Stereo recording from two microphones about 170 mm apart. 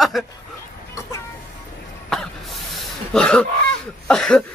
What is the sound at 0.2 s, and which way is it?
Speech, centre (ahead or behind).